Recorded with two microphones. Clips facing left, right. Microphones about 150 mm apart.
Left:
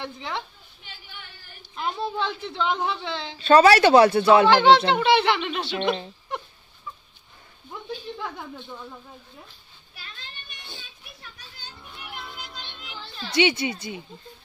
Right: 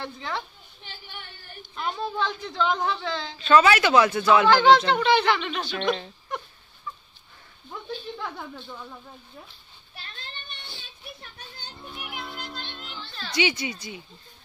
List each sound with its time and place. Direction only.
0.0 s speech: 20° left (ahead or behind)
1.6 s speech: 25° left (ahead or behind)
3.4 s speech: 35° left (ahead or behind)
13.3 s speech: 25° left (ahead or behind)